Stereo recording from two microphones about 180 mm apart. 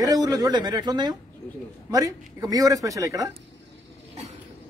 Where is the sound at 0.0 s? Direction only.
20° right (ahead or behind).